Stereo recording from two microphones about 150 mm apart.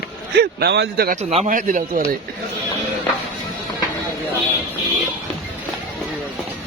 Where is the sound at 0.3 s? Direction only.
90° right.